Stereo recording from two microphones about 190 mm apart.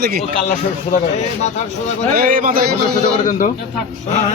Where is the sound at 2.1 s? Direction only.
45° right (ahead or behind).